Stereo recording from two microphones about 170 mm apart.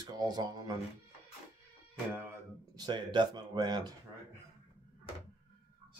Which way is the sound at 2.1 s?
15° right (ahead or behind).